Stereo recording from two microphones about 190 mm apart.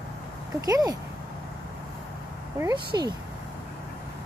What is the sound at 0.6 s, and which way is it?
Speech, 20° right (ahead or behind).